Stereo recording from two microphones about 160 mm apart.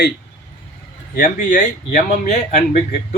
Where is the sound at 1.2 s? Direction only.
55° left (ahead or behind).